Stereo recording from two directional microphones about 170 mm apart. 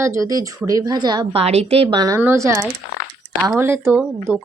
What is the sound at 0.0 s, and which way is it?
A woman's voice, 20° right (ahead or behind).